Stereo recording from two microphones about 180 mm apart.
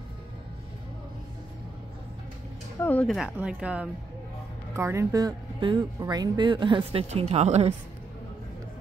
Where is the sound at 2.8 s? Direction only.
10° left (ahead or behind).